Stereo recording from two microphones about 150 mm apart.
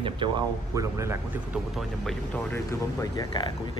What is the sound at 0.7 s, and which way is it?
Speech, 20° right (ahead or behind).